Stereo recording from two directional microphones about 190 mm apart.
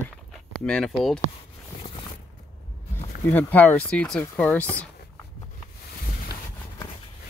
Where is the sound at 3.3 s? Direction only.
10° left (ahead or behind).